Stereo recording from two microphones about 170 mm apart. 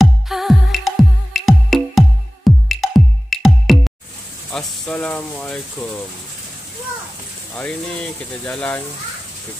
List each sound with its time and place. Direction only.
0.0 s music: centre (ahead or behind)
4.5 s speech: 5° left (ahead or behind)
7.5 s speech: 5° left (ahead or behind)